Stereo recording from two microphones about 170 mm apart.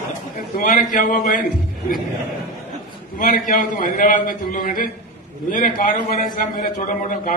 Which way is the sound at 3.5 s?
50° left (ahead or behind).